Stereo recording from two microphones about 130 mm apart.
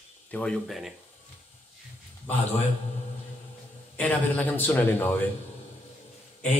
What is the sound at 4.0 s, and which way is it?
Speech, 10° left (ahead or behind).